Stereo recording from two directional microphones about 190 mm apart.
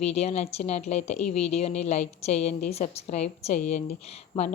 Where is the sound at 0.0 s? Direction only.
35° left (ahead or behind).